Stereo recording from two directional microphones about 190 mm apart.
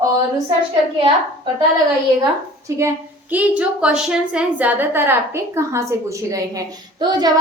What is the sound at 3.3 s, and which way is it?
A woman's voice, 5° right (ahead or behind).